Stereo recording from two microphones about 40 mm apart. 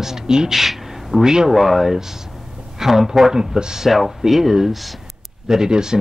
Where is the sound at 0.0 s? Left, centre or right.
Centre.